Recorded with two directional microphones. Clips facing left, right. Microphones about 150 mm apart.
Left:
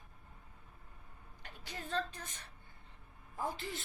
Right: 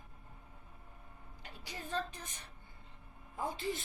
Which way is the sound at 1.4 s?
15° right (ahead or behind).